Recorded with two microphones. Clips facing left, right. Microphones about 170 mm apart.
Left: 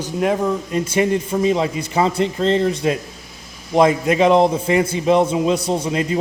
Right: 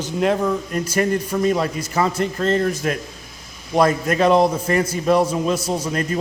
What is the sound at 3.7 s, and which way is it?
A man's voice, 15° left (ahead or behind).